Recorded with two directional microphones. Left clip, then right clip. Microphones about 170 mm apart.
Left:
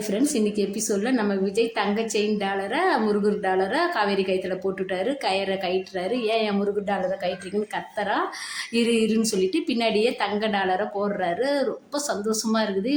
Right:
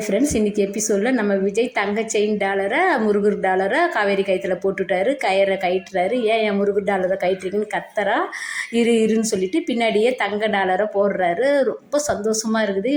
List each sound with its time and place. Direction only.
0.1 s a woman's voice: 20° right (ahead or behind)